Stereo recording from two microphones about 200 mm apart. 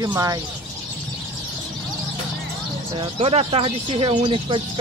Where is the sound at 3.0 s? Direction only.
30° right (ahead or behind).